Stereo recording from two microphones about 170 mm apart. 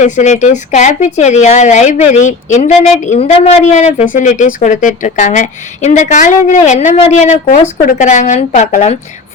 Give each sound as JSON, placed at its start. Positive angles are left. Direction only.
{"t": 0.0, "sound": "speech", "side_deg": 45}